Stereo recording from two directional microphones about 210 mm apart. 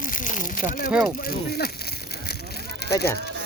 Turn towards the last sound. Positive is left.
turn(degrees=50)  # may be behind; listen again after turning